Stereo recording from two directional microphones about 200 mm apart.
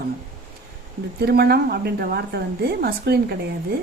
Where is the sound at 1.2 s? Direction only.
50° right (ahead or behind).